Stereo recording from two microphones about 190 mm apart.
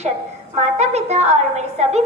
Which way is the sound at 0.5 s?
35° right (ahead or behind).